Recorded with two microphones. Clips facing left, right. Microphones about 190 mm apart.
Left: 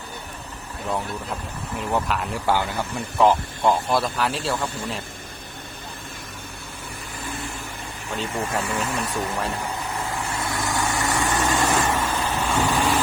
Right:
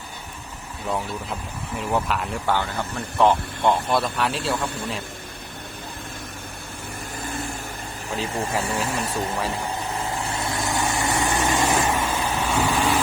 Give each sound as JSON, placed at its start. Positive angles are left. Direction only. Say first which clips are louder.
{"t": 1.7, "sound": "speech", "louder": "even", "side_deg": 0}
{"t": 8.1, "sound": "speech", "louder": "right 1 dB", "side_deg": 0}
{"t": 8.6, "sound": "speech", "louder": "right 1 dB", "side_deg": -30}
{"t": 10.6, "sound": "vehicle", "louder": "even", "side_deg": -25}